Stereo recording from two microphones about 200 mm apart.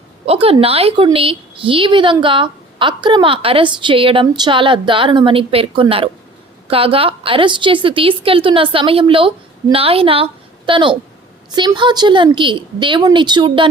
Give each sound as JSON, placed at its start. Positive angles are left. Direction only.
{"t": 0.3, "sound": "a woman's voice", "side_deg": -30}